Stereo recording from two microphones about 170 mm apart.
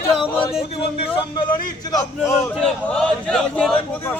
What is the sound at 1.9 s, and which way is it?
Speech, 15° left (ahead or behind).